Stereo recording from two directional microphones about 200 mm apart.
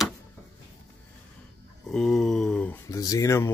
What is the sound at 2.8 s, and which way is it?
Speech, 15° left (ahead or behind).